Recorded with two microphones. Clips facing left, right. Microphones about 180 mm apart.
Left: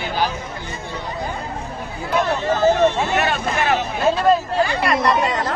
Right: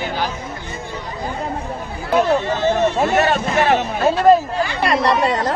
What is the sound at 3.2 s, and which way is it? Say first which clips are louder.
Speech: right 4 dB; 40° right (ahead or behind).